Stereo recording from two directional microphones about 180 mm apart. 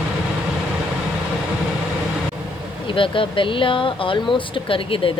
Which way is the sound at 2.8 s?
30° left (ahead or behind).